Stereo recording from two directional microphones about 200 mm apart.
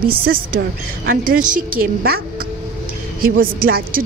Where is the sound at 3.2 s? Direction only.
45° right (ahead or behind).